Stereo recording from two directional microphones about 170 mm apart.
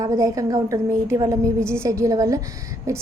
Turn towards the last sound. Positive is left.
turn(degrees=-20)  # may be behind; listen again after turning